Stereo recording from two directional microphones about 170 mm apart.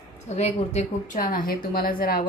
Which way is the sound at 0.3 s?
40° left (ahead or behind).